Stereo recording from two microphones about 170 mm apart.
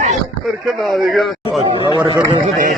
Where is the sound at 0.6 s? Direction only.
Centre (ahead or behind).